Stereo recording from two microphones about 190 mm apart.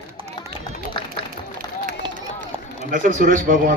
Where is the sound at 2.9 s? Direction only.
45° right (ahead or behind).